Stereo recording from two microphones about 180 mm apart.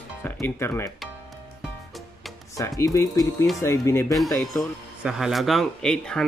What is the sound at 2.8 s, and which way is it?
Speech, 20° left (ahead or behind).